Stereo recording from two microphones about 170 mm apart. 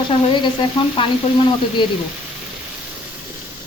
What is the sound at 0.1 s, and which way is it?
Frying, 25° left (ahead or behind).